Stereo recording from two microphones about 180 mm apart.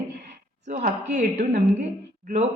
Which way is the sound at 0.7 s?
40° right (ahead or behind).